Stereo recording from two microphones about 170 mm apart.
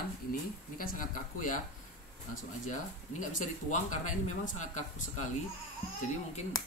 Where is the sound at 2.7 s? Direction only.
45° left (ahead or behind).